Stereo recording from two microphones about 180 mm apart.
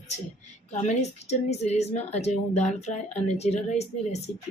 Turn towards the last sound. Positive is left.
turn(degrees=35)  # may be behind; listen again after turning